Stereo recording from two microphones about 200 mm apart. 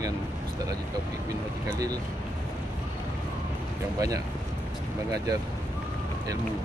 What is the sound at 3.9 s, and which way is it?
Speech, 20° right (ahead or behind).